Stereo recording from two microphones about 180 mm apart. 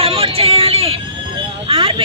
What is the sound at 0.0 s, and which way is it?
Vehicle, 30° right (ahead or behind).